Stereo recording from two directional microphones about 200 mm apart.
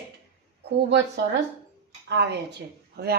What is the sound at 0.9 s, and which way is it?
A woman's voice, 60° right (ahead or behind).